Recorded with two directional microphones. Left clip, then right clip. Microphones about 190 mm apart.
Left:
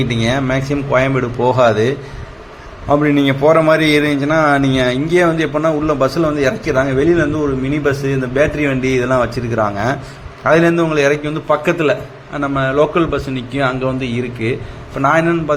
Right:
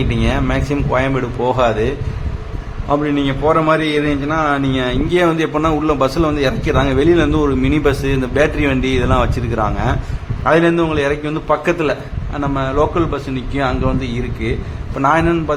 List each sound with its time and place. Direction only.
0.0 s a man's voice: 15° left (ahead or behind)
2.9 s a man's voice: 15° left (ahead or behind)
5.1 s a man's voice: centre (ahead or behind)